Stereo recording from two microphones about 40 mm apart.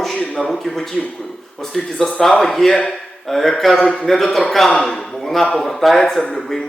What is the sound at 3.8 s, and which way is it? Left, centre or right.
Speech, left.